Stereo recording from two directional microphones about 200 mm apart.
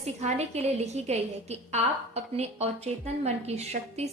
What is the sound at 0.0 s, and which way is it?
A woman's voice, 35° right (ahead or behind).